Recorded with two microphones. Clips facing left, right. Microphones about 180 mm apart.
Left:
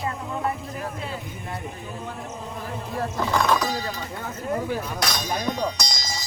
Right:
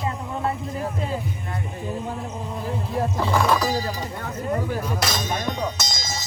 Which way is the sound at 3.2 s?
5° right (ahead or behind).